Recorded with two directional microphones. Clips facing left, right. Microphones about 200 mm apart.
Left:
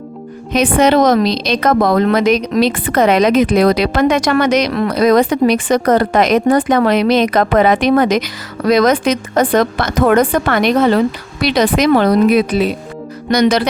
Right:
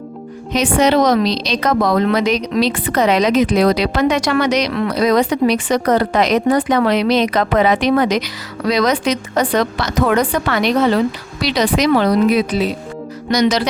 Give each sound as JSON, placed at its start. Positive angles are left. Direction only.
{"t": 0.5, "sound": "a woman's voice", "side_deg": 55}